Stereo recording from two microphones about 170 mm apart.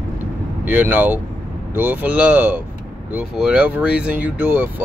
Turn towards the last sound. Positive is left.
turn(degrees=-10)  # may be behind; listen again after turning